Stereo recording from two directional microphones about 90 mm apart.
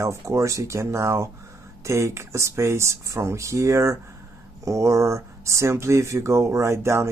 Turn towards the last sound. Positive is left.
turn(degrees=-30)  # may be behind; listen again after turning